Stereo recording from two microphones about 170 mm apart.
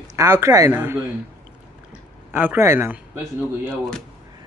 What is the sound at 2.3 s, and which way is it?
Speech, 10° right (ahead or behind).